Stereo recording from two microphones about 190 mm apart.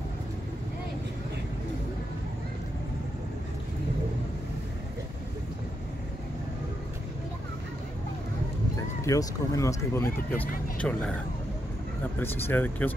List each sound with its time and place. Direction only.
9.0 s speech: 15° left (ahead or behind)
12.2 s speech: 10° left (ahead or behind)